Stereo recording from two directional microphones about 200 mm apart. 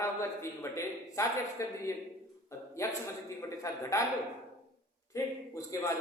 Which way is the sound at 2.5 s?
15° left (ahead or behind).